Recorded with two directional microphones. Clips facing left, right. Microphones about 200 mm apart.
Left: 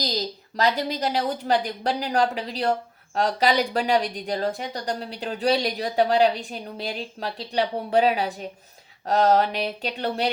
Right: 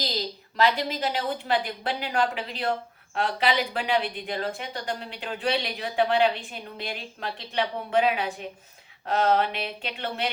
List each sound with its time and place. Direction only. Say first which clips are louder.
0.0 s a woman's voice: left 3 dB; 40° left (ahead or behind)